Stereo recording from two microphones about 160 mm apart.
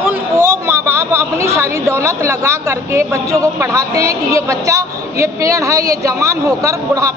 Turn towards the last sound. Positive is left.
turn(degrees=-20)  # may be behind; listen again after turning